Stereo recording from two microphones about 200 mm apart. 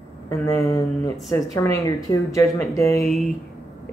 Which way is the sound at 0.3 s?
15° left (ahead or behind).